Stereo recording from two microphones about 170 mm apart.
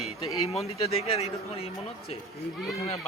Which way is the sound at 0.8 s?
35° left (ahead or behind).